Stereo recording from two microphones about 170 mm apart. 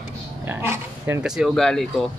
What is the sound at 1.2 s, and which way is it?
Speech, 5° right (ahead or behind).